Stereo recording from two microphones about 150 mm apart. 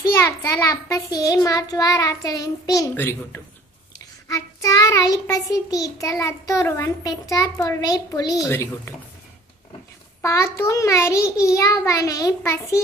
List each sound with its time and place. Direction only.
0.2 s child singing: 15° left (ahead or behind)
10.2 s child singing: 20° left (ahead or behind)